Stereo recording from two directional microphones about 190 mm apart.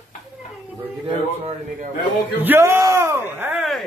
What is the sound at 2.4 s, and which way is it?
Speech, 10° right (ahead or behind).